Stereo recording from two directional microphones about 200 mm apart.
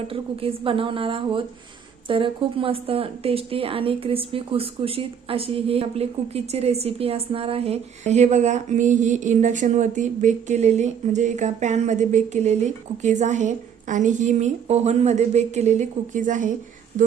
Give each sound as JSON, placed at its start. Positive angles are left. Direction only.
{"t": 0.1, "sound": "a woman's voice", "side_deg": -30}